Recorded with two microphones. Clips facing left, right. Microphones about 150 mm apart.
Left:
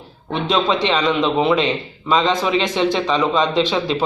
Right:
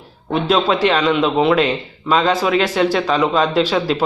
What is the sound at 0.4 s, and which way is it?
Speech, 5° right (ahead or behind).